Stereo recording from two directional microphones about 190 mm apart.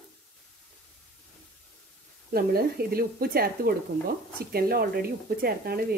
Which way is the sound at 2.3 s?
55° right (ahead or behind).